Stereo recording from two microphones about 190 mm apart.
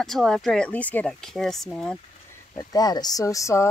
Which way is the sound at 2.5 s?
20° left (ahead or behind).